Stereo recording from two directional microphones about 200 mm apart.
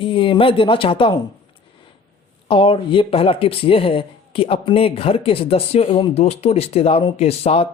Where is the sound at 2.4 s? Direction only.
25° left (ahead or behind).